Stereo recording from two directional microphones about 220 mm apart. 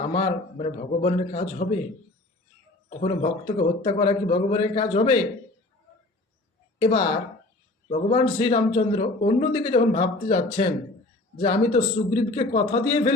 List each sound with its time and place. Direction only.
0.1 s a man's voice: 30° left (ahead or behind)
3.0 s a man's voice: 30° left (ahead or behind)
6.7 s a man's voice: 25° left (ahead or behind)